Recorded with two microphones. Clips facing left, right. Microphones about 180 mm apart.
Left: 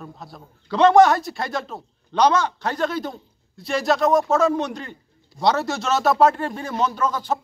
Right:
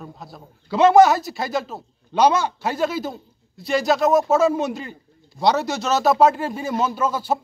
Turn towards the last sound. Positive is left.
turn(degrees=-5)  # may be behind; listen again after turning